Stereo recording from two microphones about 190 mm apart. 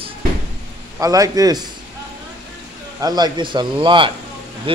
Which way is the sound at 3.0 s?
20° right (ahead or behind).